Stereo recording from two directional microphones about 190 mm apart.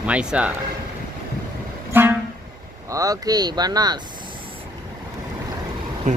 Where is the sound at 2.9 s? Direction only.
20° right (ahead or behind).